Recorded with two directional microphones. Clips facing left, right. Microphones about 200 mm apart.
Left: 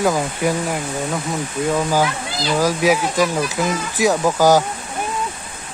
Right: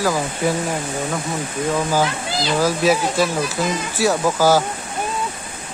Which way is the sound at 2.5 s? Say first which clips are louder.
Left 1 dB; 15° left (ahead or behind).